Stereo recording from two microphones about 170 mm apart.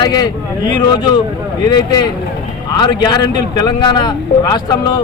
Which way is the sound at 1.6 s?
25° left (ahead or behind).